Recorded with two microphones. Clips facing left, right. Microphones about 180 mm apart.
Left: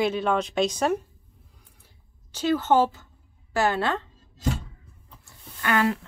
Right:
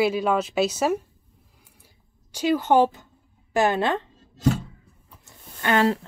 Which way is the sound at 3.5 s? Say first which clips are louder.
Right 3 dB; 20° right (ahead or behind).